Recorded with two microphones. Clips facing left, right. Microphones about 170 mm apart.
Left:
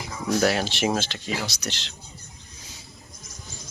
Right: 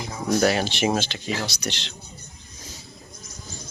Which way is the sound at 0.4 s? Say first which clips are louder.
Right 1 dB; centre (ahead or behind).